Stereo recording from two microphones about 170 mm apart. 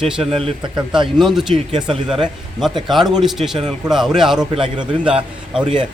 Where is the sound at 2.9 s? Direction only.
Centre (ahead or behind).